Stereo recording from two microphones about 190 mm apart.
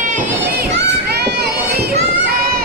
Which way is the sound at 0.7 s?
60° right (ahead or behind).